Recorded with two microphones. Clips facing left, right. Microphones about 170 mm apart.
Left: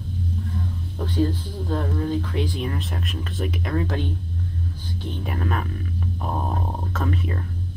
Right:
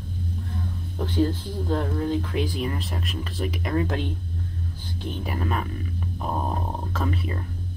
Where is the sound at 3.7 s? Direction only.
15° right (ahead or behind).